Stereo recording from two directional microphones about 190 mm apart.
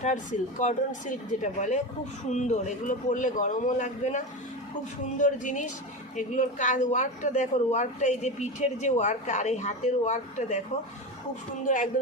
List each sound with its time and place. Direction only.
0.0 s a woman's voice: 40° left (ahead or behind)
11.6 s speech: 45° left (ahead or behind)